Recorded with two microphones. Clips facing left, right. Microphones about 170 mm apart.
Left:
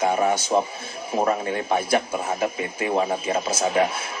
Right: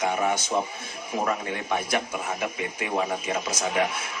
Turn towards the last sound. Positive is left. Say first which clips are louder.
# left 4 dB
turn(degrees=30)  # may be behind; listen again after turning